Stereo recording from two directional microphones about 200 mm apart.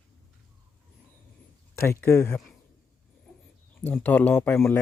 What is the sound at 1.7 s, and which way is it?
Speech, 10° left (ahead or behind).